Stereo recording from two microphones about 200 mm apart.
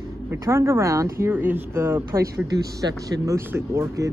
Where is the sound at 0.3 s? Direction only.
15° right (ahead or behind).